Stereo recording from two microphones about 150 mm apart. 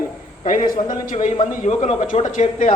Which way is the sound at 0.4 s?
65° left (ahead or behind).